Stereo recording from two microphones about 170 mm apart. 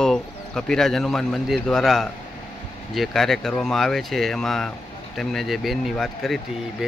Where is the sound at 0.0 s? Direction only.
5° left (ahead or behind).